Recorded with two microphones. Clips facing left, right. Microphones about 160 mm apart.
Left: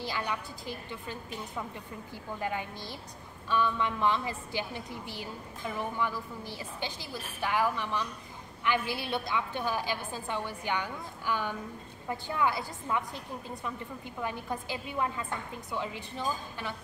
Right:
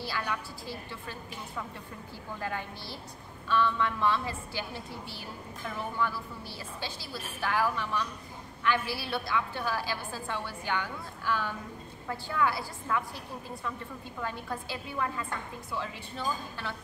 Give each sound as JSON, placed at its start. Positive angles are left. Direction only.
{"t": 0.0, "sound": "a woman's voice", "side_deg": 20}
{"t": 2.4, "sound": "a woman's voice", "side_deg": 15}
{"t": 14.2, "sound": "a woman's voice", "side_deg": 20}